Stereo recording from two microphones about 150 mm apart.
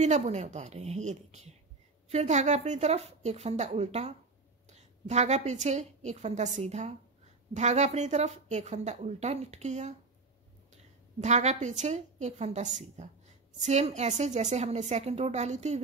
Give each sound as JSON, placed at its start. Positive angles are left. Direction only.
{"t": 0.0, "sound": "a woman's voice", "side_deg": -50}